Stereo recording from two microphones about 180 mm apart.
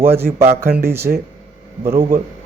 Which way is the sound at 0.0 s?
15° right (ahead or behind).